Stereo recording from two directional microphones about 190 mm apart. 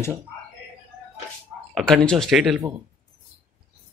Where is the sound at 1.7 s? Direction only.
5° left (ahead or behind).